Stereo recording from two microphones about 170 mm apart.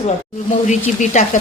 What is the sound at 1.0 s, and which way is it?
Speech, 45° left (ahead or behind).